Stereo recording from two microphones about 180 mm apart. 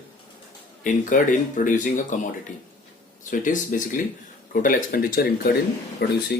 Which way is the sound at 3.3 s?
45° left (ahead or behind).